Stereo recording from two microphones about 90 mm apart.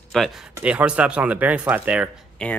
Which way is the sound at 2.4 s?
10° left (ahead or behind).